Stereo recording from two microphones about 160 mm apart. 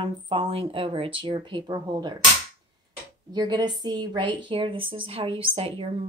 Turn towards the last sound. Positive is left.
turn(degrees=-35)  # may be behind; listen again after turning